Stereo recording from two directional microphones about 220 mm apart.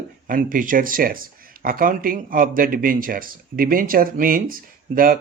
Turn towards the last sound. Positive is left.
turn(degrees=-40)  # may be behind; listen again after turning